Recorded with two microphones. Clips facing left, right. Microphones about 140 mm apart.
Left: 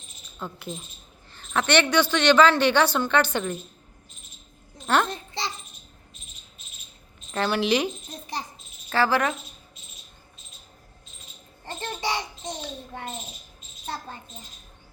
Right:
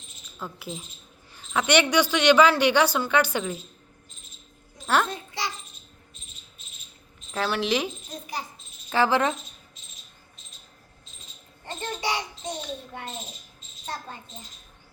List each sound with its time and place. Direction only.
0.3 s a woman's voice: centre (ahead or behind)
4.9 s a sound: 5° right (ahead or behind)
7.3 s a woman's voice: centre (ahead or behind)
8.9 s speech: 20° right (ahead or behind)
11.9 s babbling: 15° right (ahead or behind)